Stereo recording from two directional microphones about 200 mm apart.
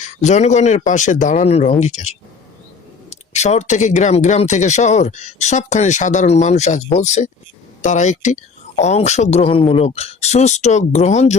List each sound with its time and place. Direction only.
0.0 s speech: 35° left (ahead or behind)